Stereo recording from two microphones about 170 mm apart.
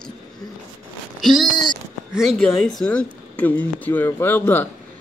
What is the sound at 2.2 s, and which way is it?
Speech, 5° left (ahead or behind).